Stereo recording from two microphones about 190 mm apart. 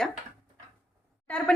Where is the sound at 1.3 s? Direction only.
5° left (ahead or behind).